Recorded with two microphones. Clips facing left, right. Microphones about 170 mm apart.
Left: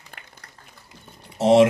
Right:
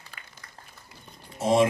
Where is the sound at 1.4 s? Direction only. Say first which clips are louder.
Left 7 dB; 75° left (ahead or behind).